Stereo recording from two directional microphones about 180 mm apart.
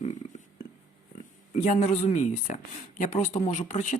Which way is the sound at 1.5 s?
40° left (ahead or behind).